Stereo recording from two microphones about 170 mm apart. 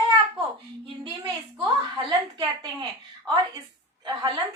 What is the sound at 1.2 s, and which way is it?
A woman's voice, 25° right (ahead or behind).